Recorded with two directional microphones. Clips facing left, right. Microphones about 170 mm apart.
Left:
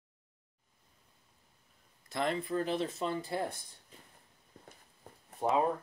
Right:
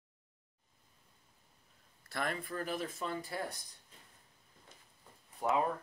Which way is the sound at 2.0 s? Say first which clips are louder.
Left 5 dB; 20° left (ahead or behind).